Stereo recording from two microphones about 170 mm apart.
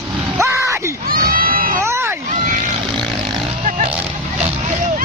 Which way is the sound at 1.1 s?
60° right (ahead or behind).